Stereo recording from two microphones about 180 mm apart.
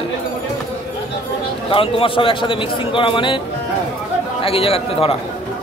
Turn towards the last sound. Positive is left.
turn(degrees=30)  # may be behind; listen again after turning